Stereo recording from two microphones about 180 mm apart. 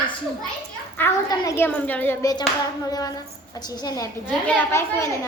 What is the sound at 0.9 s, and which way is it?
A woman's voice, 15° left (ahead or behind).